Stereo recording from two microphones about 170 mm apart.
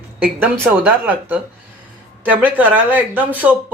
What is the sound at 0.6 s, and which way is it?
Speech, 10° right (ahead or behind).